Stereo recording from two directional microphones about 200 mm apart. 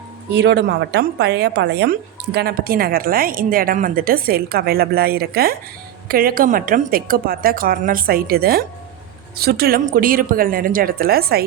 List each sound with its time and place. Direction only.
0.3 s a woman's voice: 60° right (ahead or behind)